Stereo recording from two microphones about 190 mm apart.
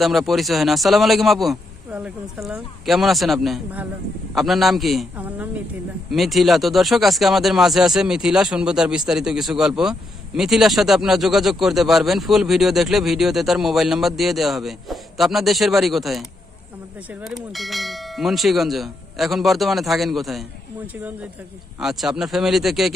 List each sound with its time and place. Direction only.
0.0 s speech: centre (ahead or behind)